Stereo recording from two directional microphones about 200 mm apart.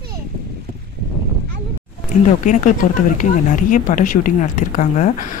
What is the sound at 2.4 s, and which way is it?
Speech, 40° left (ahead or behind).